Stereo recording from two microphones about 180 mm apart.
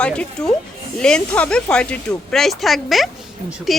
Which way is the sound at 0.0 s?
5° left (ahead or behind).